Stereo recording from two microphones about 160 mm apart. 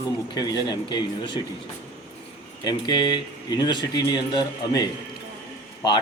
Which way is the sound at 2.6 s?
25° left (ahead or behind).